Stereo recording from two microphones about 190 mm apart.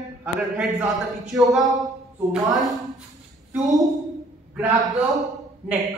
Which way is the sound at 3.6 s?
20° right (ahead or behind).